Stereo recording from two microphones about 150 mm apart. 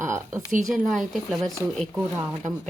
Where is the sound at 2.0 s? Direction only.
20° right (ahead or behind).